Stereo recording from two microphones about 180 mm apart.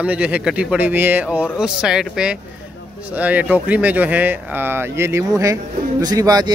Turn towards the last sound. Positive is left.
turn(degrees=-20)  # may be behind; listen again after turning